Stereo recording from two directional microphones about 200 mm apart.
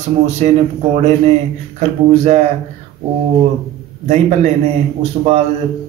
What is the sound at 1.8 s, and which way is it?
Speech, 30° right (ahead or behind).